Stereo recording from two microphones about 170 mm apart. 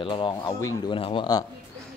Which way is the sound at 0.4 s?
20° left (ahead or behind).